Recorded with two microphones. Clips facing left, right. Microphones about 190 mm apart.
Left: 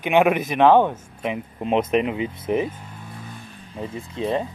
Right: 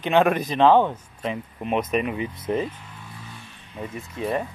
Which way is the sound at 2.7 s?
45° left (ahead or behind).